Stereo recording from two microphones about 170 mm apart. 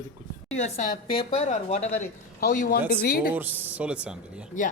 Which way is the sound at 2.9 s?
70° left (ahead or behind).